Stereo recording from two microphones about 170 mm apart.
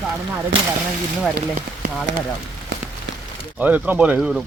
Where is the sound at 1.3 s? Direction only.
65° right (ahead or behind).